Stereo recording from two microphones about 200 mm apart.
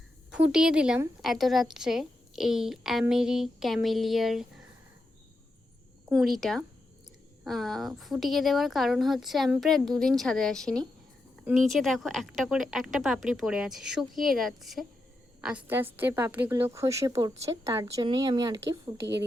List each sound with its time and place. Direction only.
0.3 s a woman's voice: 5° right (ahead or behind)
6.1 s a woman's voice: centre (ahead or behind); by 18.5 s 20° right (ahead or behind)